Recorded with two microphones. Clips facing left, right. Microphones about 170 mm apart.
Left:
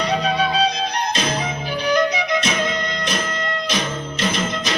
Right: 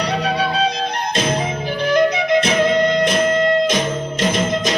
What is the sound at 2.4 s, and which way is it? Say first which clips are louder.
Music: right 7 dB; 55° right (ahead or behind).